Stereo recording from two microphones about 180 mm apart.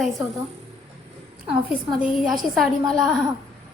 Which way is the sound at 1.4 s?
10° right (ahead or behind).